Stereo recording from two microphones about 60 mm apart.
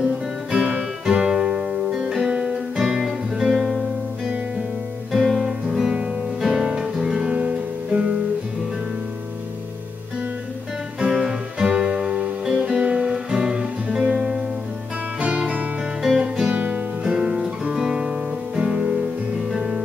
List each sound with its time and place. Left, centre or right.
0.0 s music: centre
5.1 s music: centre
11.0 s music: centre
12.8 s guitar: centre
15.1 s music: centre
17.0 s music: centre
17.7 s guitar: centre
19.5 s music: centre